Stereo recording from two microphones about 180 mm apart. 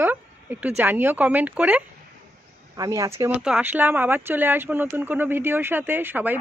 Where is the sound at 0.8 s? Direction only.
10° right (ahead or behind).